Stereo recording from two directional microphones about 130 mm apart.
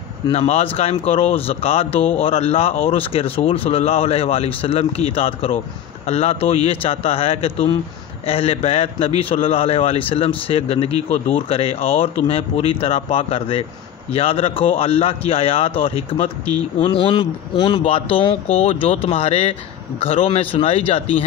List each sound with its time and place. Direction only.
0.3 s a man's voice: 50° left (ahead or behind)